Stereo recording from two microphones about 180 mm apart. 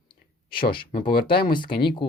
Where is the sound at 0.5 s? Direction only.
30° left (ahead or behind).